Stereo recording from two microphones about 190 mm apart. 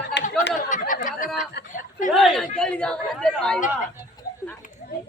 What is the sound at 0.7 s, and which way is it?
Chatter, 45° left (ahead or behind).